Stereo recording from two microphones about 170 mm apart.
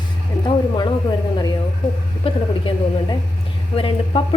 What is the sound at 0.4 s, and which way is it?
Speech, 25° left (ahead or behind).